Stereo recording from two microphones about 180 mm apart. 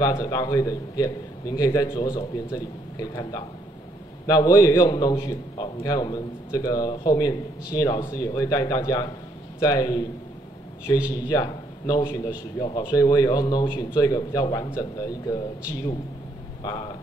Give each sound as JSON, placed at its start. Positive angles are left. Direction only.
{"t": 0.0, "sound": "a man's voice", "side_deg": 20}
{"t": 16.6, "sound": "a man's voice", "side_deg": 25}